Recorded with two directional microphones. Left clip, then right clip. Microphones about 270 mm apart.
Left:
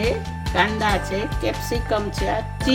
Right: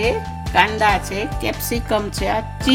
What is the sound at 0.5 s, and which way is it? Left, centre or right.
Speech, right.